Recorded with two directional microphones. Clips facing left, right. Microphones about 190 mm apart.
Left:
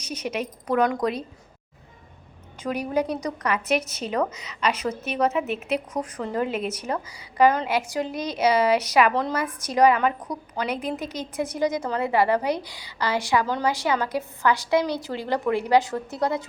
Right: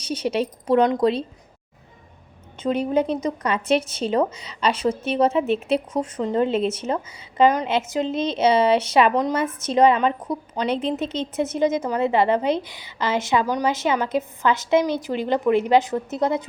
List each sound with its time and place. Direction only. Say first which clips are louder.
0.0 s a woman's voice: right 6 dB; 30° right (ahead or behind)
2.6 s a woman's voice: right 4 dB; 25° right (ahead or behind)